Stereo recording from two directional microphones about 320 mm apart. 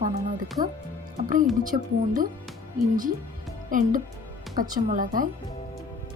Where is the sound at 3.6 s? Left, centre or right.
Right.